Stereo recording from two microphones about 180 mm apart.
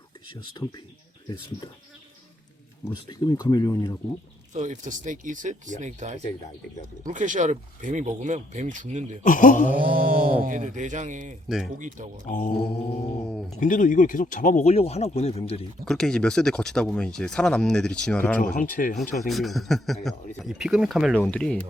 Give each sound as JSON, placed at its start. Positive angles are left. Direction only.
{"t": 3.1, "sound": "speech", "side_deg": 20}
{"t": 4.5, "sound": "speech", "side_deg": -40}
{"t": 9.2, "sound": "speech", "side_deg": 50}
{"t": 9.7, "sound": "speech", "side_deg": -50}
{"t": 11.4, "sound": "speech", "side_deg": 0}
{"t": 11.8, "sound": "speech", "side_deg": -45}
{"t": 12.3, "sound": "speech", "side_deg": 45}
{"t": 13.6, "sound": "speech", "side_deg": 45}
{"t": 15.9, "sound": "speech", "side_deg": 5}
{"t": 18.5, "sound": "speech", "side_deg": 45}
{"t": 19.1, "sound": "speech", "side_deg": 0}